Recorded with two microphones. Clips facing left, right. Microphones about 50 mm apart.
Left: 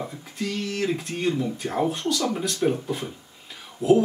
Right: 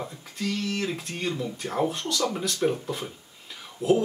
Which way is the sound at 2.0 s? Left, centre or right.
Centre.